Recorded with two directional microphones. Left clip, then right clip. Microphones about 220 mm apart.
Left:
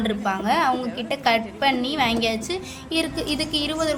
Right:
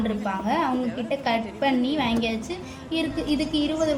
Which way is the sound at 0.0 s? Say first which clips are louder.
Left 3 dB; 40° left (ahead or behind).